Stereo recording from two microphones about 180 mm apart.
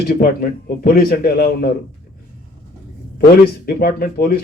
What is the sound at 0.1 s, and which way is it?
A man's voice, 55° left (ahead or behind).